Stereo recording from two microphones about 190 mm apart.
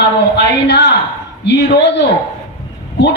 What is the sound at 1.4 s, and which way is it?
Speech, 65° left (ahead or behind).